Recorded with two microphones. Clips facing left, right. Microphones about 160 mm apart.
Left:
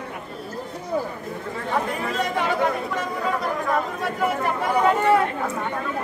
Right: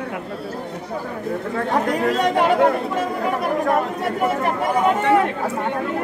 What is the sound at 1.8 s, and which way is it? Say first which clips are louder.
Speech: right 7 dB; 75° right (ahead or behind).